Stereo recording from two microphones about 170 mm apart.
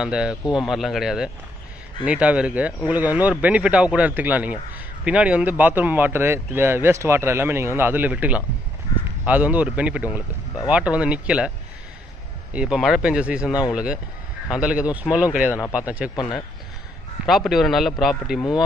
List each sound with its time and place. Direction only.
0.0 s speech: 5° right (ahead or behind)
12.5 s speech: 5° right (ahead or behind)
13.5 s speech: 20° left (ahead or behind)
14.5 s speech: 5° right (ahead or behind)
16.2 s speech: 25° left (ahead or behind)
17.3 s speech: centre (ahead or behind)